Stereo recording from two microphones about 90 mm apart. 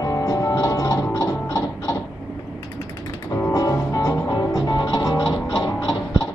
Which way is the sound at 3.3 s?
35° left (ahead or behind).